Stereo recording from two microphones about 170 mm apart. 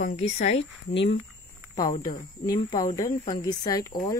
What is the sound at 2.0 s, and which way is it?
Speech, 25° left (ahead or behind).